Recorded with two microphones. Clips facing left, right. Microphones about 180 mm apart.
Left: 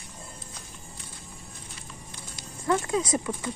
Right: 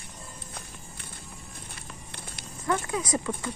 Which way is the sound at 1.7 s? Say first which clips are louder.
Even; 60° right (ahead or behind).